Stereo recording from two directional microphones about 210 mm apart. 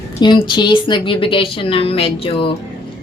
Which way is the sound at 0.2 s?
20° left (ahead or behind).